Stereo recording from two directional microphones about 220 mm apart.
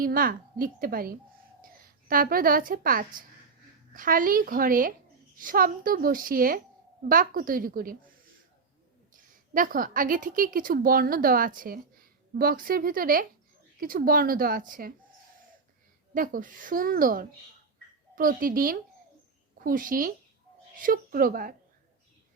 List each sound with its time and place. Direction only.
0.0 s a woman's voice: 40° right (ahead or behind)
9.6 s a woman's voice: 40° right (ahead or behind)
16.1 s a woman's voice: 40° right (ahead or behind)